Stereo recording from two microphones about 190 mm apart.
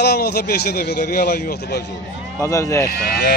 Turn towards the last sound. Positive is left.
turn(degrees=65)  # may be behind; listen again after turning